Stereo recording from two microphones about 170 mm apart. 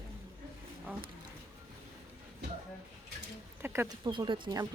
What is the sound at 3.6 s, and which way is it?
Speech, 15° right (ahead or behind).